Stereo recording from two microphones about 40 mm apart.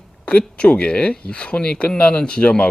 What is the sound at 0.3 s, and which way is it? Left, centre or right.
Speech, left.